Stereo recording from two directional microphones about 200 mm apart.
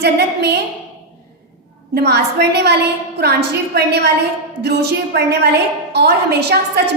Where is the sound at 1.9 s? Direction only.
55° right (ahead or behind).